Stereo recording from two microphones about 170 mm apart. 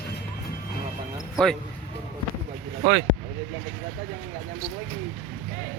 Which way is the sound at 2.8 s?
60° right (ahead or behind).